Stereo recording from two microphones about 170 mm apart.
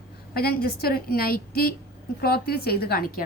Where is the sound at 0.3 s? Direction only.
65° left (ahead or behind).